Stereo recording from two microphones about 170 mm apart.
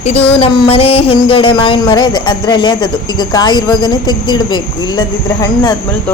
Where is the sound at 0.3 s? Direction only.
35° left (ahead or behind).